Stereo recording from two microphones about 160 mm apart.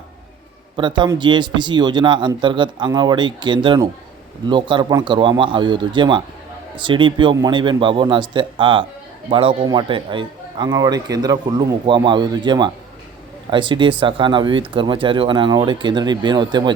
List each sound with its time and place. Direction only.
0.8 s speech: 30° right (ahead or behind)